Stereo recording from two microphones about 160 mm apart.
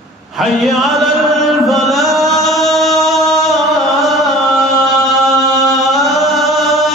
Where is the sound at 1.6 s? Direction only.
Centre (ahead or behind).